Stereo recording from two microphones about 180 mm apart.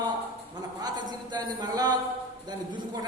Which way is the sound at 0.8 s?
25° right (ahead or behind).